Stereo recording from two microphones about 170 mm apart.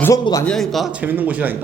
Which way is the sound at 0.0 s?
20° left (ahead or behind).